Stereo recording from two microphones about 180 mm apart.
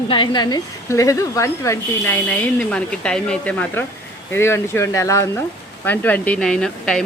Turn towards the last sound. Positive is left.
turn(degrees=5)  # may be behind; listen again after turning